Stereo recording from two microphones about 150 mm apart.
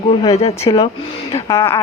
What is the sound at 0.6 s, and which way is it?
Speech, 25° left (ahead or behind).